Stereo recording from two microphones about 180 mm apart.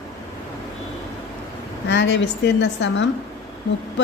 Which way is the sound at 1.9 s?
75° left (ahead or behind).